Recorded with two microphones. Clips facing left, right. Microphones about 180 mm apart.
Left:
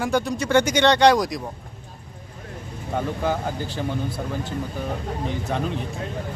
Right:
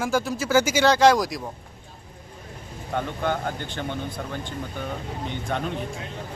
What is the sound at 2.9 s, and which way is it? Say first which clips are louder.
Speech: left 2 dB; 5° left (ahead or behind).